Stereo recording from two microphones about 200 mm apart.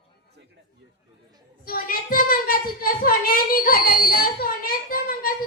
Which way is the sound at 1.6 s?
45° left (ahead or behind).